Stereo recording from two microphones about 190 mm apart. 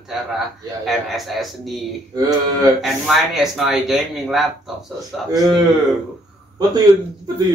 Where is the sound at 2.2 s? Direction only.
20° right (ahead or behind).